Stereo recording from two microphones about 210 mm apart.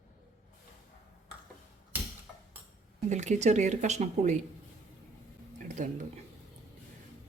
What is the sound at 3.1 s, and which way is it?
Speech, 35° right (ahead or behind).